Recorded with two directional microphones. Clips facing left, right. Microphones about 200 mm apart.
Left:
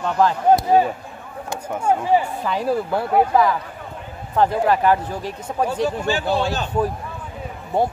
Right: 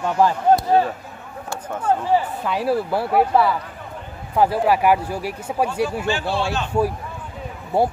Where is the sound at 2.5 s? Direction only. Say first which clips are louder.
Even; 5° right (ahead or behind).